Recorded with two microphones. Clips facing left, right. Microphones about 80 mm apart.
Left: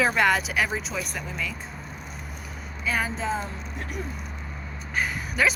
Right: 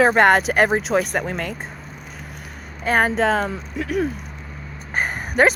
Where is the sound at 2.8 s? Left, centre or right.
Right.